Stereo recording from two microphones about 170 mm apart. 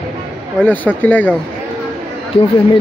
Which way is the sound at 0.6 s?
10° left (ahead or behind).